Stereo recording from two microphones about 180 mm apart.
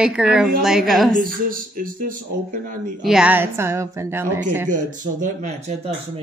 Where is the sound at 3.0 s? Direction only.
5° right (ahead or behind).